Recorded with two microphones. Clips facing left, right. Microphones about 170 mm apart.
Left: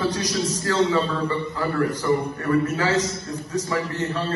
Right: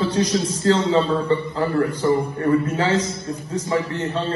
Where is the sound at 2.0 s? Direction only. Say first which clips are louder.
Right 3 dB; 25° right (ahead or behind).